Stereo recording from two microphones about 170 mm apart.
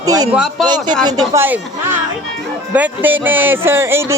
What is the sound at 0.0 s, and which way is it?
A man's voice, 20° right (ahead or behind).